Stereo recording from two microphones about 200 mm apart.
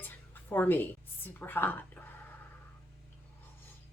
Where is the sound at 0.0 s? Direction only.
10° left (ahead or behind).